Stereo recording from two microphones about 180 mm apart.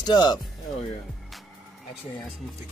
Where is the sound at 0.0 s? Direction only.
25° left (ahead or behind).